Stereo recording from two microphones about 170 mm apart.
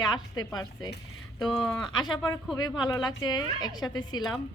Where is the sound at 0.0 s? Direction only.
25° left (ahead or behind).